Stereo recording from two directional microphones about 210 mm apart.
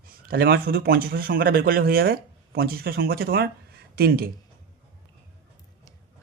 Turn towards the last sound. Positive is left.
turn(degrees=-45)  # may be behind; listen again after turning